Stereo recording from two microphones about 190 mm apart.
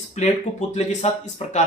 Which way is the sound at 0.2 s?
40° left (ahead or behind).